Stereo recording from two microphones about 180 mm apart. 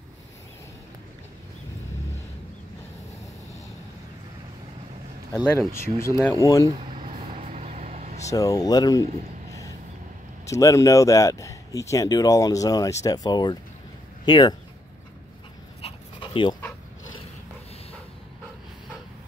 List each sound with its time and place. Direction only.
5.7 s speech: 15° left (ahead or behind)
6.9 s vehicle: 35° right (ahead or behind)
8.3 s speech: 20° left (ahead or behind)
9.5 s vehicle: 20° left (ahead or behind)
10.5 s speech: 15° left (ahead or behind)
15.8 s dog: 30° left (ahead or behind)